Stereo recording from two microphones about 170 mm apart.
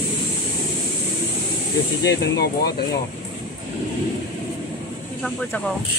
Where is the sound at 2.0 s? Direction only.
80° left.